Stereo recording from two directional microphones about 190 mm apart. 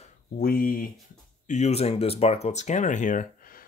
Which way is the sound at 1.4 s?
35° left (ahead or behind).